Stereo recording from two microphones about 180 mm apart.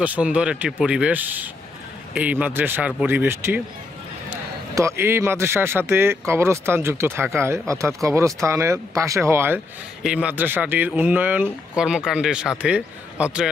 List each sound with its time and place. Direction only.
0.0 s speech: 10° right (ahead or behind)
4.7 s speech: 15° right (ahead or behind)